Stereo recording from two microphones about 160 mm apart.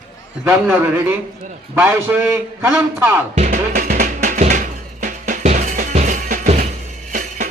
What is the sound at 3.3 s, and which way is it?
Music, 50° right (ahead or behind).